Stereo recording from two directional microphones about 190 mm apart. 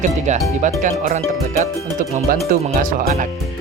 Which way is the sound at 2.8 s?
45° right (ahead or behind).